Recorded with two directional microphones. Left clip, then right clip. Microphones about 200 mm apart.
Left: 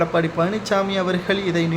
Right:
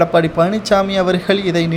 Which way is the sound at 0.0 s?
25° right (ahead or behind).